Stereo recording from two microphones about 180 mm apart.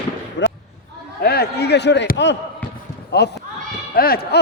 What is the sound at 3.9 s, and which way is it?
Speech, 55° left (ahead or behind).